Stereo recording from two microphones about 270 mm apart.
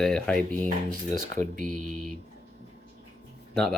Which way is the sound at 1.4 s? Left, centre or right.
Right.